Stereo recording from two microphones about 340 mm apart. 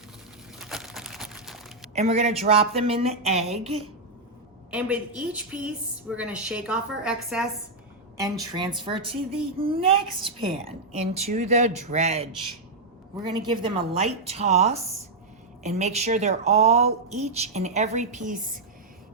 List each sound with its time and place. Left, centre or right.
0.6 s a sound: centre
2.0 s a woman's voice: centre
4.7 s a woman's voice: centre
8.2 s a woman's voice: centre
13.2 s a woman's voice: centre